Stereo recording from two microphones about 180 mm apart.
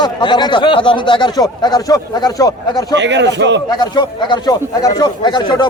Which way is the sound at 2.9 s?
75° right (ahead or behind).